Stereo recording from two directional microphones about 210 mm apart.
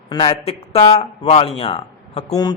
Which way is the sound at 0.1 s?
20° left (ahead or behind).